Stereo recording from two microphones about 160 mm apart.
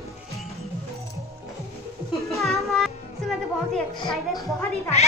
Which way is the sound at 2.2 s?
20° left (ahead or behind).